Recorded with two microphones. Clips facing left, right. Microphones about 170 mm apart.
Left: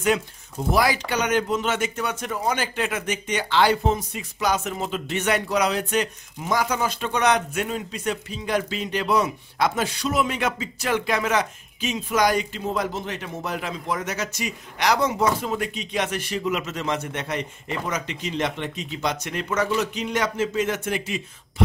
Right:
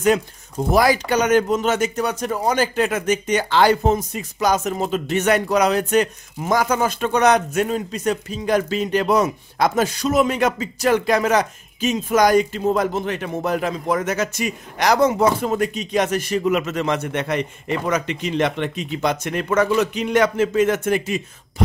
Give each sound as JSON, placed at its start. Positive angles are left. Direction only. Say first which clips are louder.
{"t": 0.7, "sound": "a man's voice", "louder": "right 6 dB", "side_deg": -45}